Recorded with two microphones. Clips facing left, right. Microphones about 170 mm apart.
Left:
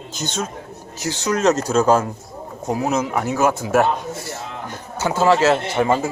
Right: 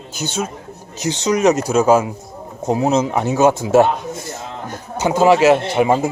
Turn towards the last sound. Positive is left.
turn(degrees=-15)  # may be behind; listen again after turning